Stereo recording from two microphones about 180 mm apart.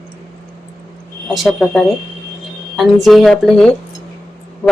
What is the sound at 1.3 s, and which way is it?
A woman's voice, centre (ahead or behind).